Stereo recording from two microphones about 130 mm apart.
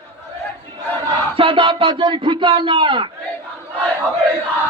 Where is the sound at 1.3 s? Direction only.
45° right (ahead or behind).